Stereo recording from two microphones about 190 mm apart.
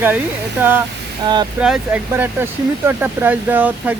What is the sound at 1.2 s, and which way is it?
Speech, 20° right (ahead or behind).